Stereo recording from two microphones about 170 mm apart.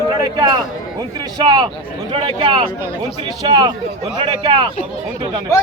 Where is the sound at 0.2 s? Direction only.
25° right (ahead or behind).